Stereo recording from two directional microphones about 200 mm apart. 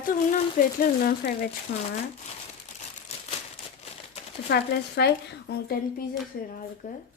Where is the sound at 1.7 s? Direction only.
75° left (ahead or behind).